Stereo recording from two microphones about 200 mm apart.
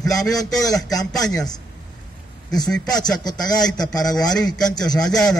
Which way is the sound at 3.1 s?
20° left (ahead or behind).